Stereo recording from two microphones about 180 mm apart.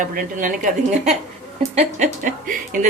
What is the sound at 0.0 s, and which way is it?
A woman's voice, 45° right (ahead or behind).